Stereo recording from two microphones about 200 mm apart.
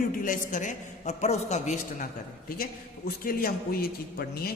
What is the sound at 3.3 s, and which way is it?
A man's voice, 45° left (ahead or behind).